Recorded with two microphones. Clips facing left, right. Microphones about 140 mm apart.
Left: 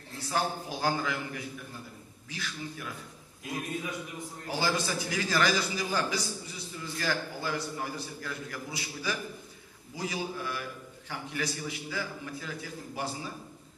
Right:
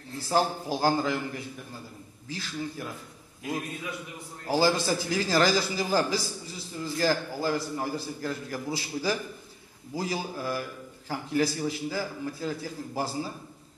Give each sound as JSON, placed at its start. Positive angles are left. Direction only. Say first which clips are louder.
{"t": 0.2, "sound": "a man's voice", "louder": "right 5 dB", "side_deg": -35}
{"t": 4.5, "sound": "a man's voice", "louder": "right 7 dB", "side_deg": -35}